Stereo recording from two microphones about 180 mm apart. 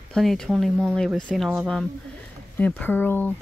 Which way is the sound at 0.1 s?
Centre (ahead or behind).